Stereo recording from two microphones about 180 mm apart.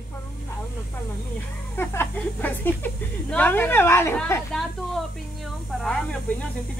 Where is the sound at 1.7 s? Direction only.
10° left (ahead or behind).